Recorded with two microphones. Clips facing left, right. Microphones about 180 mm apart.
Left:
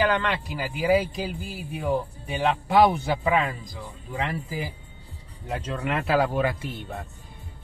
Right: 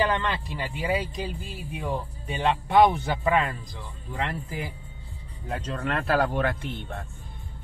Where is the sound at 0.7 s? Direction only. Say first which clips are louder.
Left 6 dB; 5° left (ahead or behind).